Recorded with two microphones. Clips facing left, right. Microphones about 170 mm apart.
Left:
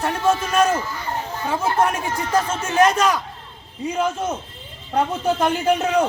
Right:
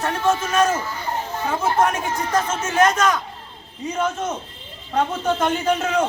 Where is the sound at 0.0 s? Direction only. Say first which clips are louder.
Left 1 dB; 10° left (ahead or behind).